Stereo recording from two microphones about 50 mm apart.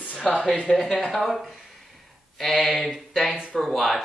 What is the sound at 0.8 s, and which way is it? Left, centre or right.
Speech, left.